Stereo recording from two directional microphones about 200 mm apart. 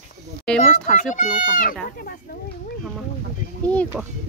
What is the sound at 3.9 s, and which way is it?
Speech, centre (ahead or behind).